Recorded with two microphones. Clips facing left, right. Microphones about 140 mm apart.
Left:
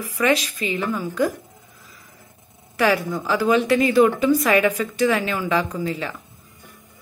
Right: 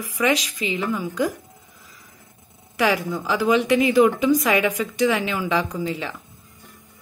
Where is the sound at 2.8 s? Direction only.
15° right (ahead or behind).